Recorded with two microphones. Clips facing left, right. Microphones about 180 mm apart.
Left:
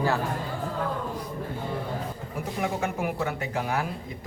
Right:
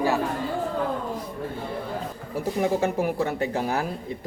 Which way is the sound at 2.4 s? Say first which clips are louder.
Right 6 dB; 35° right (ahead or behind).